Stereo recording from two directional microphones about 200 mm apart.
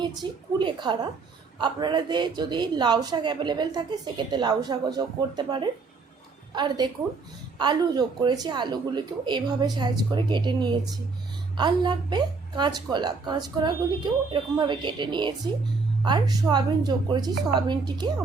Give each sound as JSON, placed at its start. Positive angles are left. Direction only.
{"t": 0.0, "sound": "a woman's voice", "side_deg": -20}